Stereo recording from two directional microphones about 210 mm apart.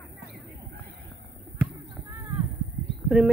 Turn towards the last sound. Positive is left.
turn(degrees=-5)  # may be behind; listen again after turning